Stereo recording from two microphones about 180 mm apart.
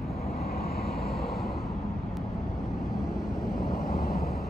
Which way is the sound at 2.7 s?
Centre (ahead or behind).